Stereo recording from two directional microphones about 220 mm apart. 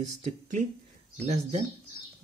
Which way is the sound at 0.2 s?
35° right (ahead or behind).